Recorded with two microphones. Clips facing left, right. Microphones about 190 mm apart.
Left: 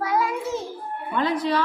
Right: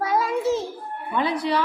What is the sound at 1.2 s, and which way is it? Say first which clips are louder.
Speech: even; 10° right (ahead or behind).